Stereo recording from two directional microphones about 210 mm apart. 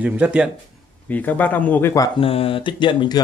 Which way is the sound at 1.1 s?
10° left (ahead or behind).